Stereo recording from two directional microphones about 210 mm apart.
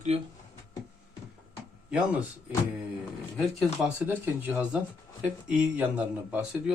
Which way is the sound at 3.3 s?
Centre (ahead or behind).